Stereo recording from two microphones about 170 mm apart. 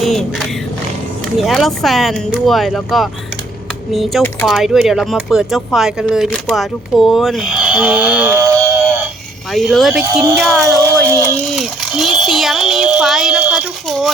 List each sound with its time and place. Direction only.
0.0 s music: centre (ahead or behind)
1.4 s speech: centre (ahead or behind); by 8.8 s 15° right (ahead or behind)
8.8 s alarm clock: 5° right (ahead or behind)
9.5 s speech: centre (ahead or behind)
10.7 s a sound: 20° right (ahead or behind)
11.5 s a sound: centre (ahead or behind)